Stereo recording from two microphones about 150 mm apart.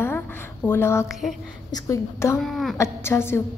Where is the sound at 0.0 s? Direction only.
15° left (ahead or behind).